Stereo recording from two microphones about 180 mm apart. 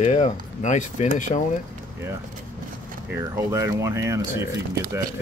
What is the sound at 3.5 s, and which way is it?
Speech, 15° right (ahead or behind).